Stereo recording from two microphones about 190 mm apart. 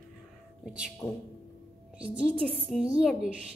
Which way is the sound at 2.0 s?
5° right (ahead or behind).